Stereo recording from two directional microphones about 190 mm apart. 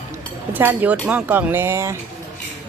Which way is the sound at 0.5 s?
10° right (ahead or behind).